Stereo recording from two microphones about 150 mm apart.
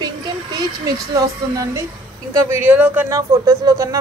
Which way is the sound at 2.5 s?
10° right (ahead or behind).